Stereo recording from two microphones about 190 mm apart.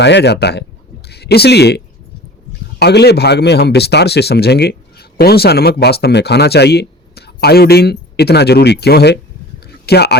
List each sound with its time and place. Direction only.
0.0 s speech: 65° left (ahead or behind)